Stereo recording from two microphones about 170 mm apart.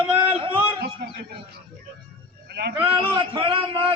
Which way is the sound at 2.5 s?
70° right (ahead or behind).